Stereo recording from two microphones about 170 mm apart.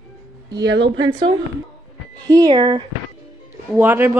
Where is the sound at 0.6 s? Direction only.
90° right.